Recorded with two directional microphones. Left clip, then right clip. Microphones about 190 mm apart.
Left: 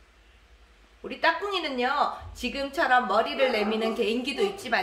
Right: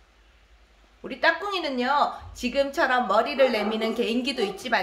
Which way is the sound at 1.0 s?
25° right (ahead or behind).